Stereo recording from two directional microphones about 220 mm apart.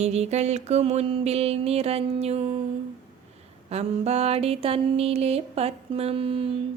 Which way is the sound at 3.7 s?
30° right (ahead or behind).